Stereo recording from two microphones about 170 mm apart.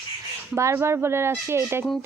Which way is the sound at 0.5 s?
15° right (ahead or behind).